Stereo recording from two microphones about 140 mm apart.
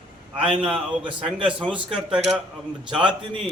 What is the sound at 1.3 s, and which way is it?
Speech, 35° right (ahead or behind).